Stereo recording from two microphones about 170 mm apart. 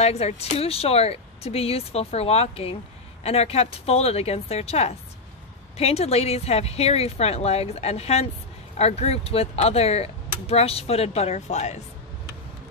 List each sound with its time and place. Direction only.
0.0 s speech: 40° left (ahead or behind)